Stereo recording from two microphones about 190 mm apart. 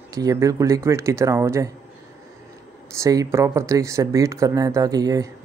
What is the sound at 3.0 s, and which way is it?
Speech, 15° right (ahead or behind).